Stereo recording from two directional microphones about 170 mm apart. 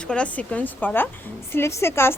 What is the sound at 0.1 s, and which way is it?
A woman's voice, 5° left (ahead or behind).